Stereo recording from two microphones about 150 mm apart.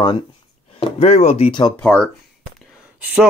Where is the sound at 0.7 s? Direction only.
45° left (ahead or behind).